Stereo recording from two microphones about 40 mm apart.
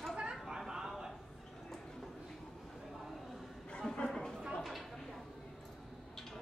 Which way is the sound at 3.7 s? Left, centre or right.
Left.